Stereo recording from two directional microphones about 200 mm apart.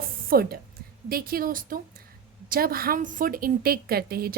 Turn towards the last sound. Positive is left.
turn(degrees=-50)  # may be behind; listen again after turning